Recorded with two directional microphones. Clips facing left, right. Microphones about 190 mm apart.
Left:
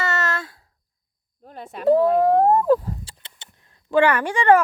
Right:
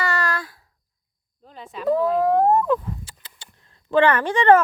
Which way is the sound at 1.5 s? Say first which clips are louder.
Left 3 dB; 55° left (ahead or behind).